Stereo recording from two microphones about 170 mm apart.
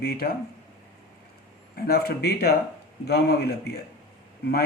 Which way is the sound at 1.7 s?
65° left (ahead or behind).